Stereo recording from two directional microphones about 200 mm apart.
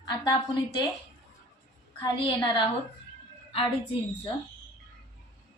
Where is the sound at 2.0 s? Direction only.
25° left (ahead or behind).